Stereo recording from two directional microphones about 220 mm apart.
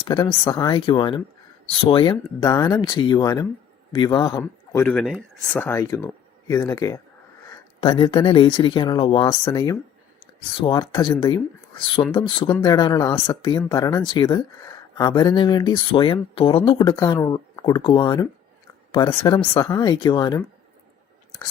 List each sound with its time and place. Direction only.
0.0 s speech: 20° left (ahead or behind)
7.8 s speech: 25° left (ahead or behind)